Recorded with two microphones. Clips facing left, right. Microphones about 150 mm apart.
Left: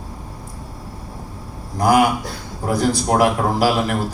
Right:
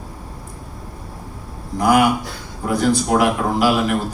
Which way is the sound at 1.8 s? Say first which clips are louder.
Even; 40° left (ahead or behind).